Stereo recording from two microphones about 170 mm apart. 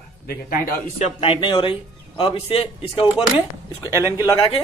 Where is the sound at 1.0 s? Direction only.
30° left (ahead or behind).